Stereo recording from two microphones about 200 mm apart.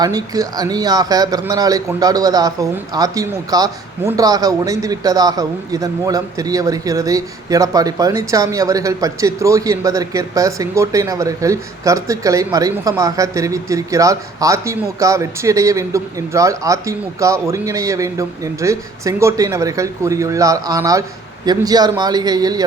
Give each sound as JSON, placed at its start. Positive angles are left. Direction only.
{"t": 0.0, "sound": "a man's voice", "side_deg": -20}